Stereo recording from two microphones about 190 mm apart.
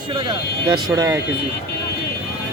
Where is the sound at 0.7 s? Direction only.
20° right (ahead or behind).